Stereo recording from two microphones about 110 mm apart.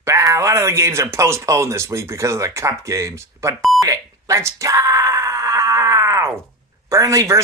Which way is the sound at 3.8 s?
30° right (ahead or behind).